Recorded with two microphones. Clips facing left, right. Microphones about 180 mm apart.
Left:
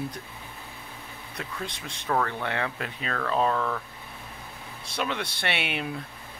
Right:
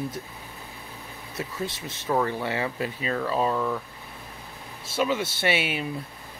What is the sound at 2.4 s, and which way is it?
Speech, 5° right (ahead or behind).